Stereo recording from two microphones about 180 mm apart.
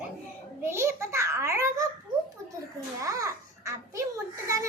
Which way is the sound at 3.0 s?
15° right (ahead or behind).